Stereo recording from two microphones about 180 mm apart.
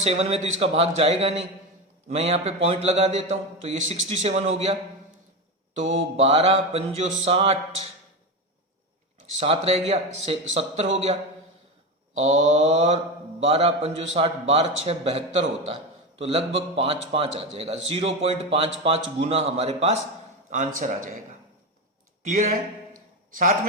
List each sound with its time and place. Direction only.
0.0 s a man's voice: 35° right (ahead or behind)
9.4 s a man's voice: 35° right (ahead or behind)
12.2 s a man's voice: 40° right (ahead or behind)
22.2 s a sound: 45° right (ahead or behind)